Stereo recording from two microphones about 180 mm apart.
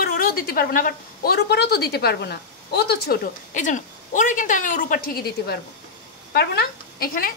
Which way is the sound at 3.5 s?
45° left (ahead or behind).